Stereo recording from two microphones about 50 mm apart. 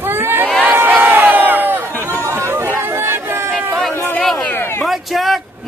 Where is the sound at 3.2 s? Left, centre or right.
Right.